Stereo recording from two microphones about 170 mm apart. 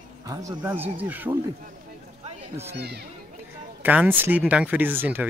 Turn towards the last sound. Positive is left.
turn(degrees=-10)  # may be behind; listen again after turning